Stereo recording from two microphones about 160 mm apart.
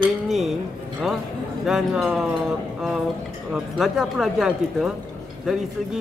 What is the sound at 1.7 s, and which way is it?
Speech, 5° right (ahead or behind).